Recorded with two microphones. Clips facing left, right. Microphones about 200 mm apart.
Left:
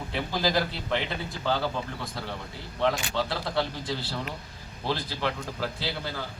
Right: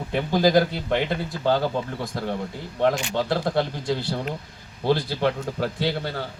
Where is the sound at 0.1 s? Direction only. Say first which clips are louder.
Right 8 dB; 50° right (ahead or behind).